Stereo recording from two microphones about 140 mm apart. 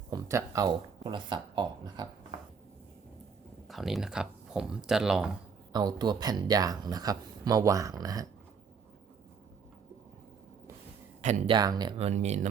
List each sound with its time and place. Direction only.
0.1 s speech: 25° right (ahead or behind)
3.7 s speech: centre (ahead or behind)
5.7 s speech: 30° right (ahead or behind)
11.4 s speech: 30° right (ahead or behind)
11.9 s speech: 50° right (ahead or behind)